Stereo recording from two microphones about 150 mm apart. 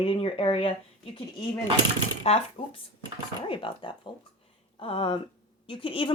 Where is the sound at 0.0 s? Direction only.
40° left (ahead or behind).